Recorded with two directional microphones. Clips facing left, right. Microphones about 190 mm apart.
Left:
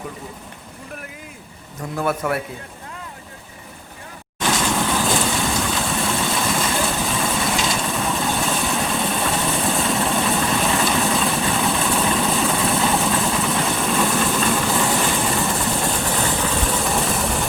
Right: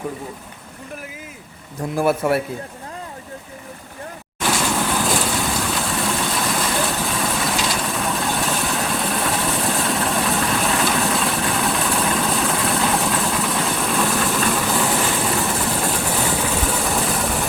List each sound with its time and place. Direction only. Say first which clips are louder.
2.0 s a man's voice: right 4 dB; 30° right (ahead or behind)
4.4 s vehicle: even; 5° right (ahead or behind)